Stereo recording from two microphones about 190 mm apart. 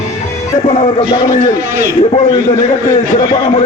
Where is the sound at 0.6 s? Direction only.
30° left (ahead or behind).